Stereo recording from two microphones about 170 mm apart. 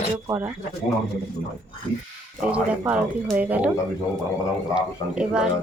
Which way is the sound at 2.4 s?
5° right (ahead or behind).